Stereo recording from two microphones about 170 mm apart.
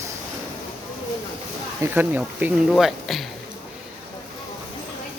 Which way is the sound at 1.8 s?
10° right (ahead or behind).